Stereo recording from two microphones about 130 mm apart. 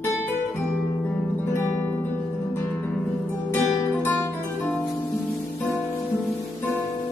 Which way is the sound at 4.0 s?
15° left (ahead or behind).